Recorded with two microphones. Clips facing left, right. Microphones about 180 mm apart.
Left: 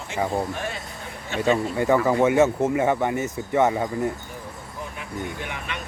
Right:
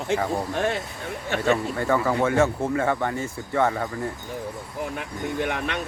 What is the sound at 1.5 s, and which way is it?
Speech, 15° left (ahead or behind).